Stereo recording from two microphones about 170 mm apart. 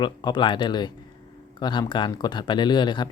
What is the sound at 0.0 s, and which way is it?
Speech, 25° left (ahead or behind).